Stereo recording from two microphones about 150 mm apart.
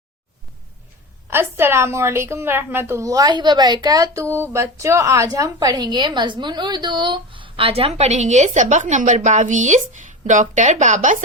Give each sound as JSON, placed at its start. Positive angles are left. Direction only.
{"t": 1.3, "sound": "a woman's voice", "side_deg": -15}